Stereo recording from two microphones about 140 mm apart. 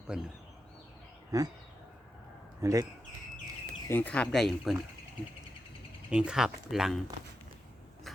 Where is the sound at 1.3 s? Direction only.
25° right (ahead or behind).